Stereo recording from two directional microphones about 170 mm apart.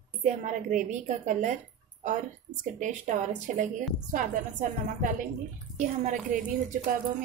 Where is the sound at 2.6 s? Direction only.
45° right (ahead or behind).